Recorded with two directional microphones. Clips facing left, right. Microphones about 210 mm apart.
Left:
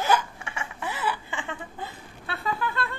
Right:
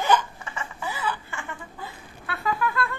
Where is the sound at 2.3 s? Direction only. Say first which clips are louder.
Right 3 dB; 30° left (ahead or behind).